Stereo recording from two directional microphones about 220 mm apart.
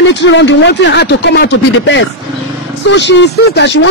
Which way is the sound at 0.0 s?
55° left (ahead or behind).